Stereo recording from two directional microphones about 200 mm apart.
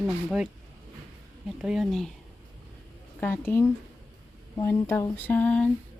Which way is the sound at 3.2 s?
10° left (ahead or behind).